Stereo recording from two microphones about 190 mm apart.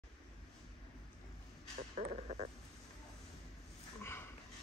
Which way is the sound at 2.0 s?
35° right (ahead or behind).